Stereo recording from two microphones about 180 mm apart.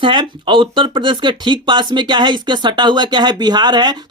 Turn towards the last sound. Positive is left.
turn(degrees=-25)  # may be behind; listen again after turning